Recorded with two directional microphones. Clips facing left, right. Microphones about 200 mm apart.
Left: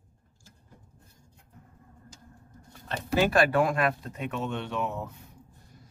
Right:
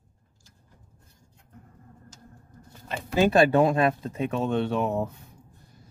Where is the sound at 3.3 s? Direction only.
25° right (ahead or behind).